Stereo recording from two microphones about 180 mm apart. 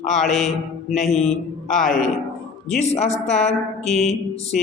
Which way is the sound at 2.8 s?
35° left (ahead or behind).